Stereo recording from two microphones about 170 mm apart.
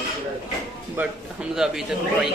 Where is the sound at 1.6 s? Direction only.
5° right (ahead or behind).